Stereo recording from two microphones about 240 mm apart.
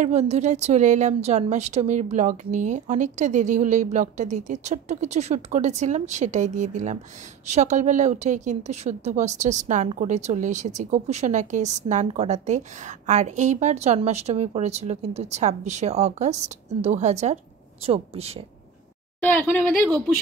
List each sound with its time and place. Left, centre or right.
0.0 s a woman's voice: right
19.2 s speech: centre